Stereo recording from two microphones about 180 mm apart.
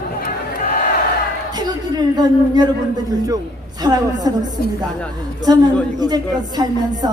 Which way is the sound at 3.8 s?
20° right (ahead or behind).